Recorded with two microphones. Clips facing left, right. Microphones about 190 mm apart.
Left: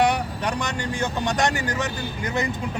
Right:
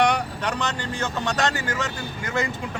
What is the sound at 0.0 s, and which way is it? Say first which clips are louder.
Speech: even; 10° left (ahead or behind).